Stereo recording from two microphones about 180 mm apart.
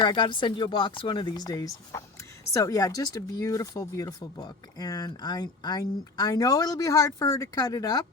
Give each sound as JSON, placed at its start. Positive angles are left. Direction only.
{"t": 0.0, "sound": "speech", "side_deg": 25}